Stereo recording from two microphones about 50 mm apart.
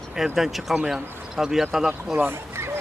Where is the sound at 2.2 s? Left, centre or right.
Right.